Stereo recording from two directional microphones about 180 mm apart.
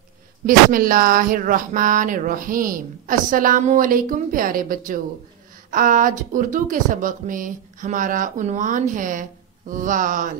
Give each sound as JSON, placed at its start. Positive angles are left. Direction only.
{"t": 0.5, "sound": "speech", "side_deg": -50}